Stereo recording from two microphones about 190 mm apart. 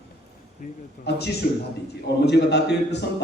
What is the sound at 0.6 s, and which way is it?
Speech, 45° left (ahead or behind).